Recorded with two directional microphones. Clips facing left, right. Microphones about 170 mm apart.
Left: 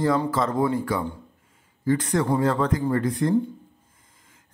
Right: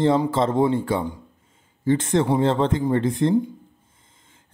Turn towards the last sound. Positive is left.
turn(degrees=-25)  # may be behind; listen again after turning